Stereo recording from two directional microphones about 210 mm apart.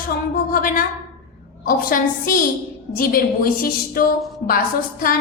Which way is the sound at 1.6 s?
45° left (ahead or behind).